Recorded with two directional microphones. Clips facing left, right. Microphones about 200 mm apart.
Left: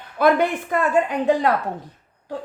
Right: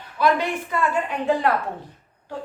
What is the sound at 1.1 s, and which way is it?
Speech, 40° left (ahead or behind).